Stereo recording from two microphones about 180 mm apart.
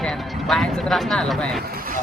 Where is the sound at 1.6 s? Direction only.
55° right (ahead or behind).